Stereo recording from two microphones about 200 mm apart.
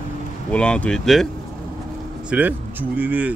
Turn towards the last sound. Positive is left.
turn(degrees=-10)  # may be behind; listen again after turning